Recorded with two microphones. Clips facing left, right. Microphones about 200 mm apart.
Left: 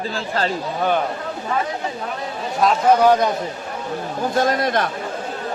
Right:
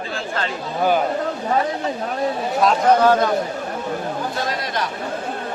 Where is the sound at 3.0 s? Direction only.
15° left (ahead or behind).